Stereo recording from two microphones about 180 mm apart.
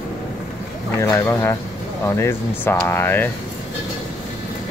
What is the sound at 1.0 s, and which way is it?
Speech, 15° left (ahead or behind).